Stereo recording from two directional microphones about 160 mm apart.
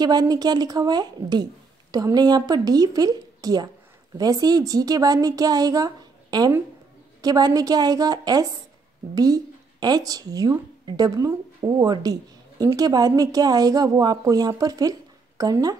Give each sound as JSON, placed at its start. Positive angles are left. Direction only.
{"t": 0.0, "sound": "speech", "side_deg": -25}